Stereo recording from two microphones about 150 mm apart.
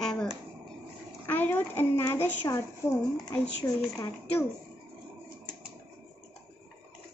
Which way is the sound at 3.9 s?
20° left (ahead or behind).